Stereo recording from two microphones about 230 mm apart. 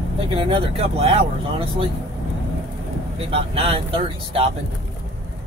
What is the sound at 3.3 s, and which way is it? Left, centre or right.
Speech, right.